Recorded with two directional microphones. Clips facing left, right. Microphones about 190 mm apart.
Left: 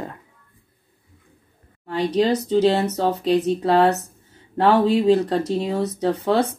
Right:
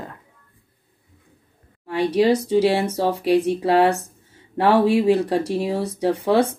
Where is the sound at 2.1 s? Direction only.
10° right (ahead or behind).